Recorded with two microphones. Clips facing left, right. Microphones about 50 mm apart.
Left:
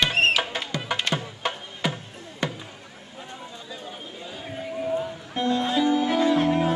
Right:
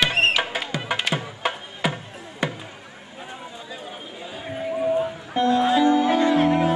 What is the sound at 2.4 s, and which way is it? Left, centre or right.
Basketball bounce, right.